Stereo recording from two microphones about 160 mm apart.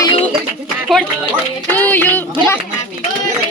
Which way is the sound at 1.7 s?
10° left (ahead or behind).